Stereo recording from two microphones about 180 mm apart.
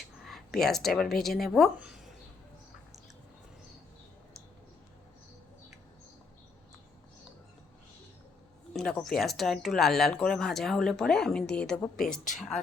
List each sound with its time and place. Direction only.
0.2 s a sound: centre (ahead or behind)
0.6 s speech: centre (ahead or behind)
8.7 s speech: 5° left (ahead or behind)
12.1 s speech: 45° left (ahead or behind)
12.4 s speech: centre (ahead or behind)